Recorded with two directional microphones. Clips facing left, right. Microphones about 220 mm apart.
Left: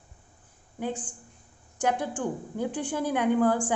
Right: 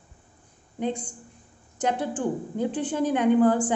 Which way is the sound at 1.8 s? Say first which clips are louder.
Right 2 dB; 10° left (ahead or behind).